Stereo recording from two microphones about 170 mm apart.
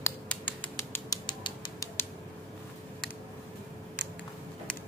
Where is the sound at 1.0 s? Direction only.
30° left (ahead or behind).